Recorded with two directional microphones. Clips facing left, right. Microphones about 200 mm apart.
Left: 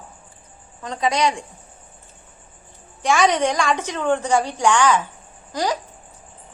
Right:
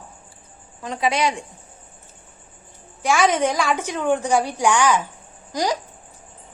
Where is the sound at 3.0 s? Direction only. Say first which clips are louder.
Left 1 dB; centre (ahead or behind).